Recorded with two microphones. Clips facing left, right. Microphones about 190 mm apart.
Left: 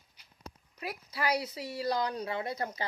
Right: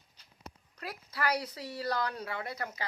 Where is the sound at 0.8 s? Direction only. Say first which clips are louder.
Left 1 dB; 15° left (ahead or behind).